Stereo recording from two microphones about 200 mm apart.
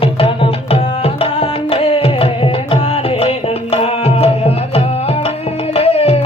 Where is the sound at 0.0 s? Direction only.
25° left (ahead or behind).